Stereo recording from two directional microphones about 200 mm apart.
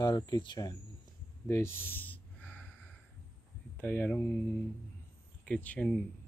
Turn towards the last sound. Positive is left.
turn(degrees=5)  # may be behind; listen again after turning